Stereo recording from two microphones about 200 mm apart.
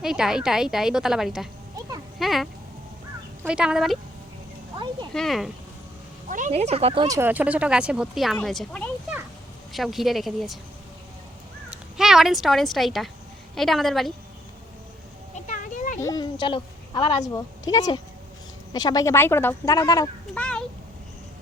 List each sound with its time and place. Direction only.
0.0 s speech: centre (ahead or behind)
2.1 s a sound: centre (ahead or behind)
3.4 s speech: 5° right (ahead or behind)
5.1 s speech: centre (ahead or behind)
6.2 s speech: 40° right (ahead or behind)
7.2 s speech: 10° right (ahead or behind)
11.7 s speech: centre (ahead or behind)
15.4 s a sound: 40° left (ahead or behind)
16.0 s a woman's voice: 15° left (ahead or behind)
20.3 s a sound: 5° left (ahead or behind)